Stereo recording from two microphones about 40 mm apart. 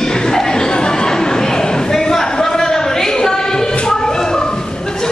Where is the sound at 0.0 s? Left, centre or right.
Centre.